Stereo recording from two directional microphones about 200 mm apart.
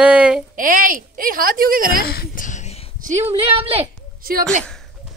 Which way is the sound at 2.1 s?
45° left (ahead or behind).